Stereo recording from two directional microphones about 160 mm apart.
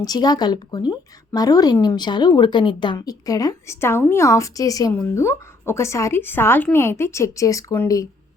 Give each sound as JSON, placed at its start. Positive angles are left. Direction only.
{"t": 0.0, "sound": "a woman's voice", "side_deg": 25}